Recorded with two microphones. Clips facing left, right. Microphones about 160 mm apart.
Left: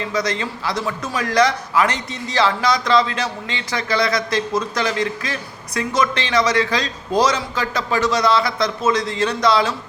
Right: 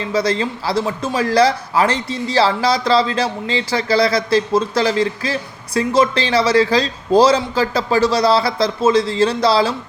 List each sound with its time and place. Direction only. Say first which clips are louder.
0.0 s speech: right 4 dB; 30° right (ahead or behind)